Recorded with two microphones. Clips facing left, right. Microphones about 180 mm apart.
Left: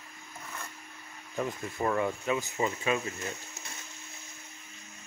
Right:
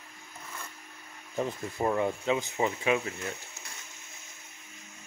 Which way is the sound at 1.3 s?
20° right (ahead or behind).